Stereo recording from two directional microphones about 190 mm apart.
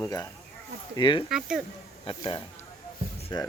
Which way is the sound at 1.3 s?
Centre (ahead or behind).